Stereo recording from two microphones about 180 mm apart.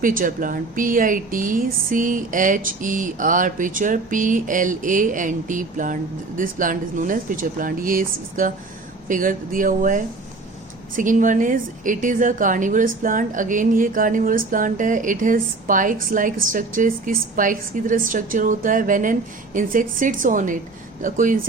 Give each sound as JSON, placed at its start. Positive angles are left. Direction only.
{"t": 0.0, "sound": "a woman's voice", "side_deg": -50}